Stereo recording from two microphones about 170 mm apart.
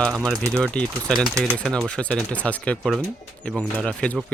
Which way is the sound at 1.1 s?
25° right (ahead or behind).